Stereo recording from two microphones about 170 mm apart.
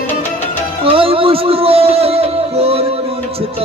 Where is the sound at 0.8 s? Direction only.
35° right (ahead or behind).